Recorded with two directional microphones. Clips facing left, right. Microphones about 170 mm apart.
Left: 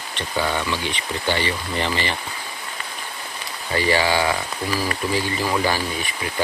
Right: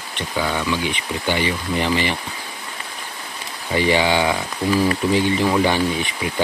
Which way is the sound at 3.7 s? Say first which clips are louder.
Right 2 dB; 20° right (ahead or behind).